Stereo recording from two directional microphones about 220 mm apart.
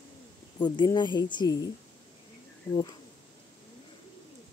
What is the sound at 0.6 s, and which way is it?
Speech, 20° left (ahead or behind).